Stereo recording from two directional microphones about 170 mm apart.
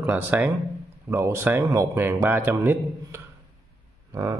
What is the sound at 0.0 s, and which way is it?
Speech, 10° right (ahead or behind).